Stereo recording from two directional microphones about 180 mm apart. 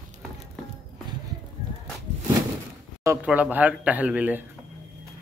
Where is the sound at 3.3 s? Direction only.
10° right (ahead or behind).